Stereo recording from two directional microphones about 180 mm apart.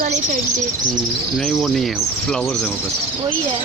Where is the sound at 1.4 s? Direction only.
Centre (ahead or behind).